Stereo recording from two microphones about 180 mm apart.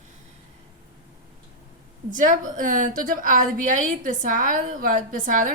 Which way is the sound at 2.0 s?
45° right (ahead or behind).